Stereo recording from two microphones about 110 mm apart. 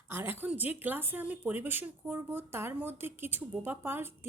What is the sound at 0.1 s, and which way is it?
Speech, 20° right (ahead or behind).